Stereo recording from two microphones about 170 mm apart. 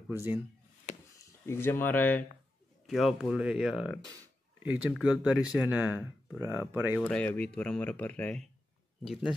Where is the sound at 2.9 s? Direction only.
Centre (ahead or behind).